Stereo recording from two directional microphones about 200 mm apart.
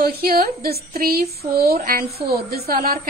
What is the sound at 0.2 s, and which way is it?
A woman's voice, 50° right (ahead or behind).